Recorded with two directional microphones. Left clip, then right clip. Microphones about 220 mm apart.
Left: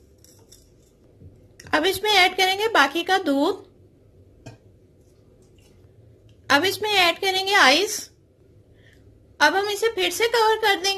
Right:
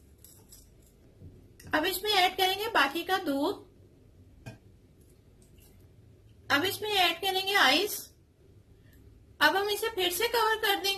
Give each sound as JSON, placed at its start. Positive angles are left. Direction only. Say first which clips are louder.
{"t": 1.6, "sound": "a woman's voice", "louder": "left 8 dB", "side_deg": 35}
{"t": 6.4, "sound": "a woman's voice", "louder": "left 8 dB", "side_deg": 40}
{"t": 9.4, "sound": "a woman's voice", "louder": "left 7 dB", "side_deg": 30}